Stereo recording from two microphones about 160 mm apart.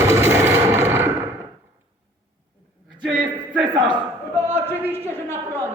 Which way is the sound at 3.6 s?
30° right (ahead or behind).